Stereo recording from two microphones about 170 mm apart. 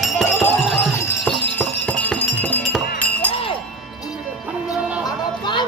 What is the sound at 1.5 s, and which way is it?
Jingle bell, 10° left (ahead or behind).